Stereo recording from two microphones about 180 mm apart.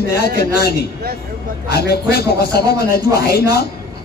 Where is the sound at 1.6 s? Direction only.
65° left (ahead or behind).